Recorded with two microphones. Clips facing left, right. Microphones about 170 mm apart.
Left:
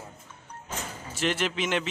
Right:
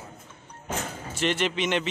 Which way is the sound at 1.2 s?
5° left (ahead or behind).